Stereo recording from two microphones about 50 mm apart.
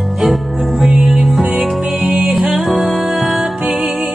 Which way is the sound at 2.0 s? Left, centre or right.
Centre.